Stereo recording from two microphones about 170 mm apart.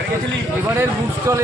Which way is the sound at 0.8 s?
20° right (ahead or behind).